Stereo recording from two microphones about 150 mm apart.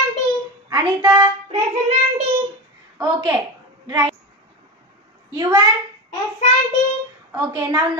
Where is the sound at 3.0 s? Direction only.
25° right (ahead or behind).